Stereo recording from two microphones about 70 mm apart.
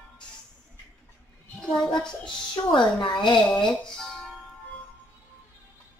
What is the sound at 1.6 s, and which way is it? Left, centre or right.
Speech, centre.